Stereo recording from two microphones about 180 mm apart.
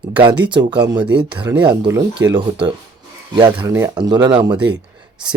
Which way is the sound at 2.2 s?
90° right.